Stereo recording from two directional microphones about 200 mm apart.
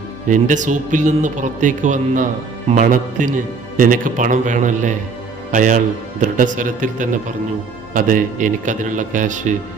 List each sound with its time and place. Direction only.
0.3 s a man's voice: 40° right (ahead or behind)